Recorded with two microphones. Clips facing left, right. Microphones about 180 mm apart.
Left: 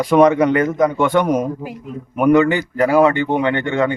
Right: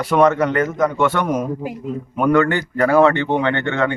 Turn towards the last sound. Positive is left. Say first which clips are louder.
# left 2 dB
turn(degrees=10)  # may be behind; listen again after turning